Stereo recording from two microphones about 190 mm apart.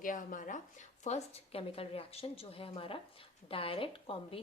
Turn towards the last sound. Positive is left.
turn(degrees=30)  # may be behind; listen again after turning